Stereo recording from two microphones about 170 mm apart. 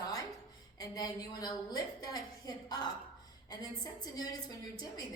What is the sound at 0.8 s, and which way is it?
Speech, 20° left (ahead or behind).